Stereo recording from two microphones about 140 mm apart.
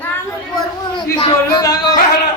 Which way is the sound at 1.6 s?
25° left (ahead or behind).